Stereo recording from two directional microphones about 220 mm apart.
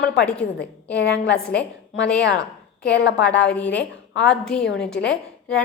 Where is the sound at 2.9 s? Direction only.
55° left (ahead or behind).